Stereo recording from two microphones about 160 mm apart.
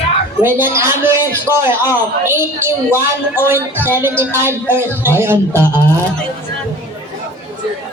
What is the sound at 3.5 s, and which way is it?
A woman's voice, 15° right (ahead or behind).